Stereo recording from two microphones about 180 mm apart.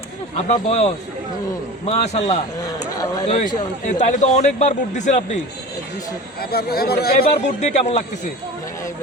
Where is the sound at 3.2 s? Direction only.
35° left (ahead or behind).